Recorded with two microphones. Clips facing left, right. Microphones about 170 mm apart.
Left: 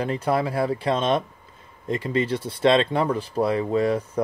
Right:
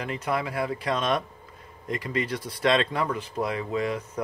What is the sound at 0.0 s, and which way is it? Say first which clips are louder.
Speech: left 6 dB; 30° left (ahead or behind).